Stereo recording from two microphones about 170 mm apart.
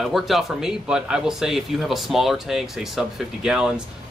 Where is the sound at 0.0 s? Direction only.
Centre (ahead or behind).